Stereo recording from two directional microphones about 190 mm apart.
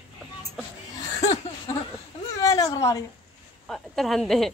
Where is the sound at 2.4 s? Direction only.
15° left (ahead or behind).